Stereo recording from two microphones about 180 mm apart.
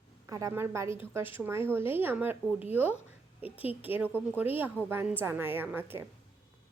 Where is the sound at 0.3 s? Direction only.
20° right (ahead or behind).